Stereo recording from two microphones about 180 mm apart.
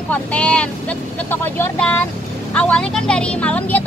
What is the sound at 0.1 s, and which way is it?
Speech, 5° left (ahead or behind).